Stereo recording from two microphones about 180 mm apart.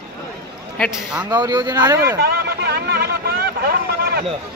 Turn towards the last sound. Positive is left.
turn(degrees=-60)  # may be behind; listen again after turning